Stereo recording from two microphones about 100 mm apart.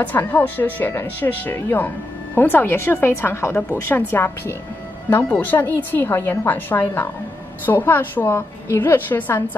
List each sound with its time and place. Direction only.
0.0 s a woman's voice: 20° left (ahead or behind)